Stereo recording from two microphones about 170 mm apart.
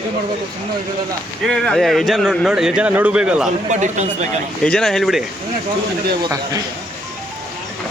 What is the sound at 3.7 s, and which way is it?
Speech, 45° right (ahead or behind).